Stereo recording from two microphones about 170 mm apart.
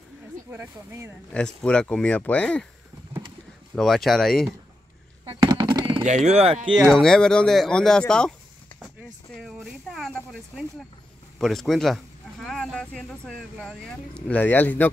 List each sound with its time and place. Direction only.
0.5 s speech: 10° right (ahead or behind)
1.3 s speech: 5° left (ahead or behind)
3.7 s speech: centre (ahead or behind)
5.4 s a sound: 25° right (ahead or behind)
6.0 s speech: 45° right (ahead or behind)
6.7 s speech: centre (ahead or behind)
9.4 s a sound: centre (ahead or behind)
11.3 s speech: centre (ahead or behind)